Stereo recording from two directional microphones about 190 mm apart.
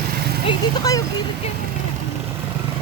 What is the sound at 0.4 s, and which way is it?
Speech, 20° left (ahead or behind).